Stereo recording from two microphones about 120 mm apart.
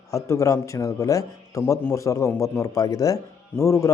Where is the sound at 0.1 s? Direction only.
25° left (ahead or behind).